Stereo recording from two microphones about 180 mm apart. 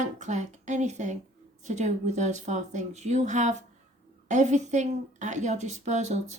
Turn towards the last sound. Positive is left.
turn(degrees=-40)  # may be behind; listen again after turning